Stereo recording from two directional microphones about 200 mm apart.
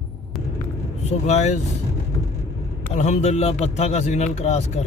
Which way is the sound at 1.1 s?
35° left (ahead or behind).